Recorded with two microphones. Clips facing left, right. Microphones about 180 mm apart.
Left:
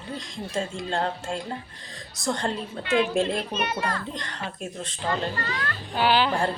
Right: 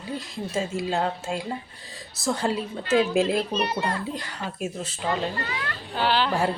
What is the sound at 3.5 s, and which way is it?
Speech, 30° right (ahead or behind).